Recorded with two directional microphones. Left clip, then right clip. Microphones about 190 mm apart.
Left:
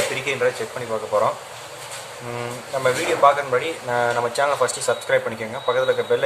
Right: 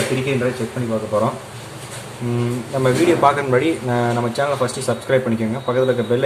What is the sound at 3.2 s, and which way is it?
Speech, 20° right (ahead or behind).